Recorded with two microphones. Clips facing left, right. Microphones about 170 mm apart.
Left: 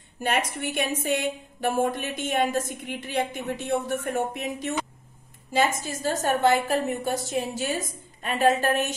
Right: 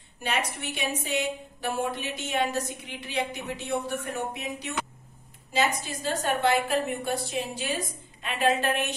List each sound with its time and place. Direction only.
0.2 s a woman's voice: 50° left (ahead or behind)